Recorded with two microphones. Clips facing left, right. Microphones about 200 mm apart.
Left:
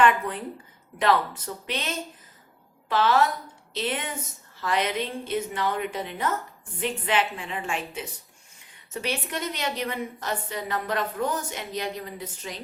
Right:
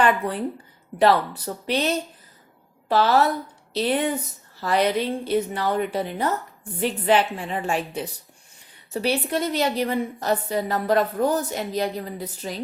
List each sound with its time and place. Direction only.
0.0 s a woman's voice: 35° right (ahead or behind)